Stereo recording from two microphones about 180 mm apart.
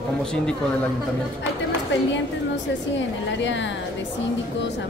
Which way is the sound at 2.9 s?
90° left.